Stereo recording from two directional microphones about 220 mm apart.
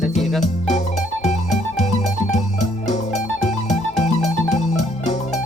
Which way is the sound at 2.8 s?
30° left (ahead or behind).